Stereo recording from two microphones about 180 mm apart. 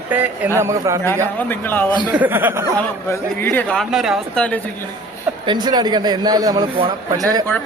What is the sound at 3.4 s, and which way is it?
Speech, 10° left (ahead or behind).